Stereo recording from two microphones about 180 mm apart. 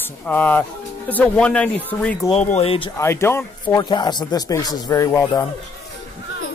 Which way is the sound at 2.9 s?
15° left (ahead or behind).